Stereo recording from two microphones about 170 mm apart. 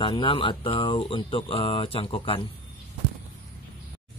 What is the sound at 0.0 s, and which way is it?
Speech, 30° left (ahead or behind).